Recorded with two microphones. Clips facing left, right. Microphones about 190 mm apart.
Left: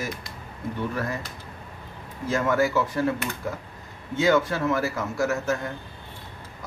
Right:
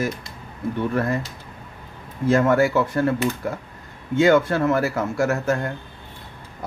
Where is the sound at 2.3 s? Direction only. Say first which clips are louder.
Right 5 dB; 55° right (ahead or behind).